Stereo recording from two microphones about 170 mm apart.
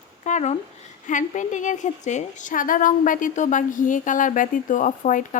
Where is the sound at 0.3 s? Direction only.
45° left (ahead or behind).